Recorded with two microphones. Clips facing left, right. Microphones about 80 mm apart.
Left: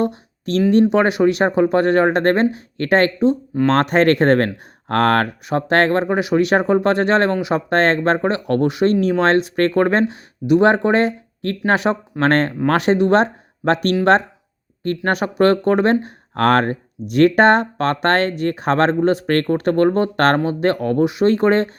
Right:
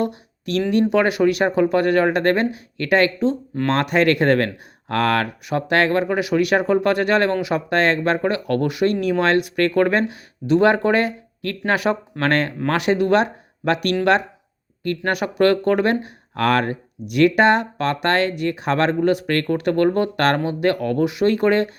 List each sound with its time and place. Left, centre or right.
0.0 s a sound: left
0.7 s speech: left
3.2 s speech: centre
3.7 s speech: left
10.4 s speech: centre
10.7 s speech: left
14.8 s speech: left